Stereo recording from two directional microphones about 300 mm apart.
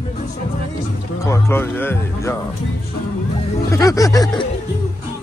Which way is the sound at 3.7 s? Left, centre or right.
Centre.